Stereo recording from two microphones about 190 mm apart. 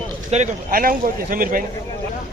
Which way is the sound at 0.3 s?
35° right (ahead or behind).